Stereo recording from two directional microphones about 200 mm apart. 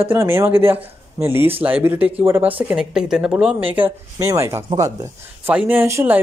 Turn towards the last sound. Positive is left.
turn(degrees=-10)  # may be behind; listen again after turning